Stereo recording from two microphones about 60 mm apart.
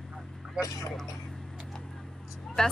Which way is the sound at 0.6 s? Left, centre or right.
Left.